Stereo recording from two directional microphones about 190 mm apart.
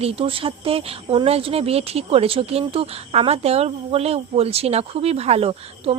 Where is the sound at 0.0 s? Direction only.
30° right (ahead or behind).